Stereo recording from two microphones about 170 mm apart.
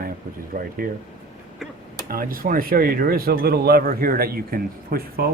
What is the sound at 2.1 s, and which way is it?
Speech, 60° right (ahead or behind).